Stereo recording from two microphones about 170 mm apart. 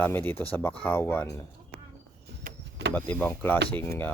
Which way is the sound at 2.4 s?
70° right (ahead or behind).